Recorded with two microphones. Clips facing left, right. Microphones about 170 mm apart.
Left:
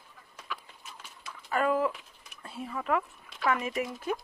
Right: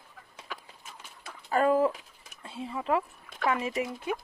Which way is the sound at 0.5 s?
50° right (ahead or behind).